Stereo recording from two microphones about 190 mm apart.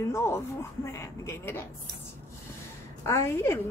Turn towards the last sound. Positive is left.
turn(degrees=15)  # may be behind; listen again after turning